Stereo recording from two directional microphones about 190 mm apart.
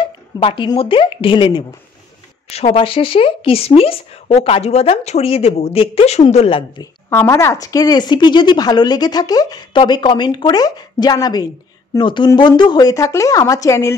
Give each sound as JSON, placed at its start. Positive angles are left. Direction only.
{"t": 0.0, "sound": "speech", "side_deg": 25}
{"t": 6.8, "sound": "speech", "side_deg": 15}